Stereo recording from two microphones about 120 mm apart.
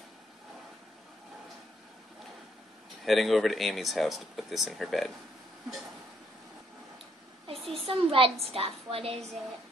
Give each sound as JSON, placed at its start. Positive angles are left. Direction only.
{"t": 3.1, "sound": "speech", "side_deg": 0}
{"t": 7.5, "sound": "a sound", "side_deg": 0}
{"t": 7.8, "sound": "a woman's voice", "side_deg": -50}